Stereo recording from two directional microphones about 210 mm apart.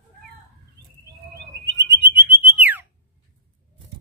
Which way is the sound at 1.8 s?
15° right (ahead or behind).